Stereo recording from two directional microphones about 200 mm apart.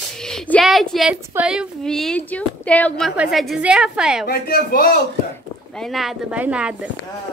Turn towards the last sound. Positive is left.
turn(degrees=-5)  # may be behind; listen again after turning